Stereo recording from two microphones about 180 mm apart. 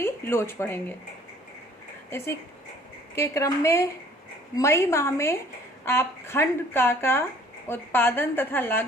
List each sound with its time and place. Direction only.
0.0 s speech: 15° left (ahead or behind)
2.0 s speech: 15° left (ahead or behind)